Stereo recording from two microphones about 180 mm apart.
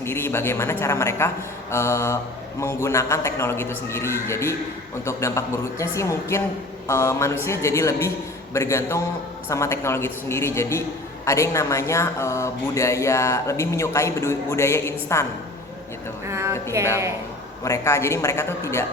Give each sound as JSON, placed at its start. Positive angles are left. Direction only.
{"t": 0.0, "sound": "speech", "side_deg": 15}
{"t": 16.2, "sound": "a woman's voice", "side_deg": -15}
{"t": 17.6, "sound": "speech", "side_deg": 15}